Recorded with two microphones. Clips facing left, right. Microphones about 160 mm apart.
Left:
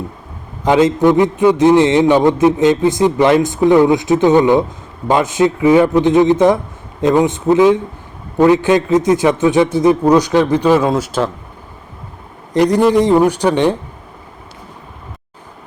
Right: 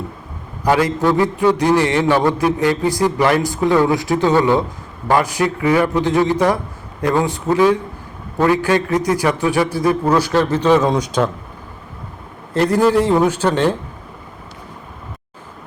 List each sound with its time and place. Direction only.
0.6 s a man's voice: 20° left (ahead or behind); by 11.3 s 5° left (ahead or behind)
12.7 s a man's voice: 5° right (ahead or behind)
13.0 s speech: 15° left (ahead or behind)